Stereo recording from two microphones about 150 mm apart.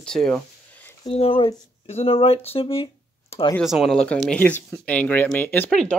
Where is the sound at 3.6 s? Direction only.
Centre (ahead or behind).